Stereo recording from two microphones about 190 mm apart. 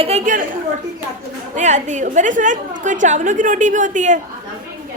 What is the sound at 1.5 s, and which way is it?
A woman's voice, 40° right (ahead or behind).